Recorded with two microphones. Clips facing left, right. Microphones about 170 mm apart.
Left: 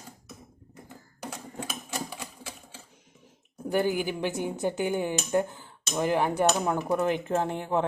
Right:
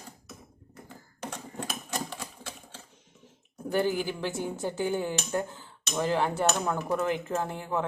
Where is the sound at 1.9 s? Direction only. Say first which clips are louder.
Even; centre (ahead or behind).